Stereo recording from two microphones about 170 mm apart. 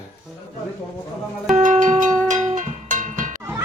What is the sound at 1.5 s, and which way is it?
Cowbell, 50° right (ahead or behind).